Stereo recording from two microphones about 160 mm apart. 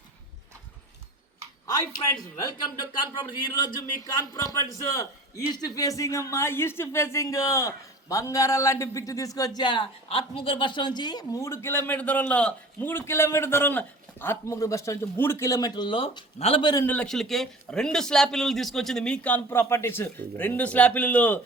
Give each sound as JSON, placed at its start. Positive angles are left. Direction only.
{"t": 1.6, "sound": "a man's voice", "side_deg": 20}
{"t": 16.8, "sound": "speech", "side_deg": 10}